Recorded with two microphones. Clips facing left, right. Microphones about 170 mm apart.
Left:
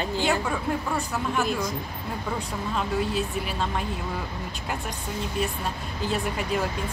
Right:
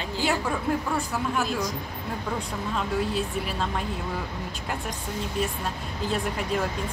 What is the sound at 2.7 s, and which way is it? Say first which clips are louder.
Speech: left 1 dB; centre (ahead or behind).